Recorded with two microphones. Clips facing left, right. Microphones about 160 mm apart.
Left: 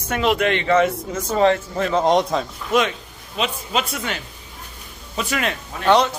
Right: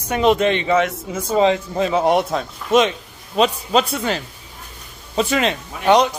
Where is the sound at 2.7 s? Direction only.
25° right (ahead or behind).